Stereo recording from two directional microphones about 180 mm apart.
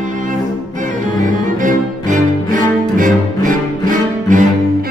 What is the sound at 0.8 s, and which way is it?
Cello, 45° right (ahead or behind).